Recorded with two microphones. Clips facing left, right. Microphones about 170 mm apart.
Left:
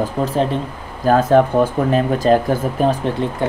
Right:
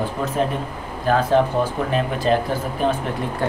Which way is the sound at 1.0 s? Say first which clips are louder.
Left 5 dB; 45° left (ahead or behind).